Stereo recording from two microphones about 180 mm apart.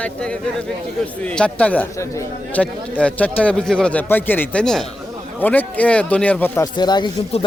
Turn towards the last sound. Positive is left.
turn(degrees=25)  # may be behind; listen again after turning